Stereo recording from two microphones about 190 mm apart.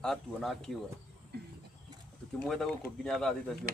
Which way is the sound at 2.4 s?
Centre (ahead or behind).